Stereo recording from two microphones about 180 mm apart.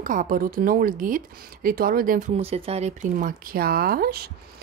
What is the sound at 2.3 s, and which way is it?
Speech, 35° right (ahead or behind).